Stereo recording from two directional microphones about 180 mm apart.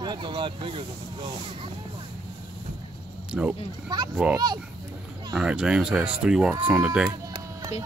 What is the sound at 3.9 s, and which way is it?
Speech, 25° right (ahead or behind).